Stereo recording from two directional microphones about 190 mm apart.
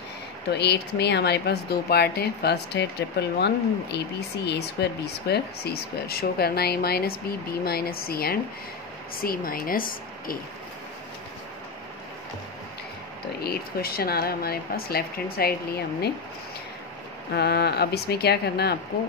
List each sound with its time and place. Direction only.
0.5 s speech: 60° left (ahead or behind)
13.4 s speech: 55° left (ahead or behind)
17.3 s speech: 55° left (ahead or behind)